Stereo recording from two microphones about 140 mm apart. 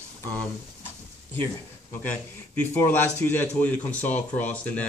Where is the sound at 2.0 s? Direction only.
15° left (ahead or behind).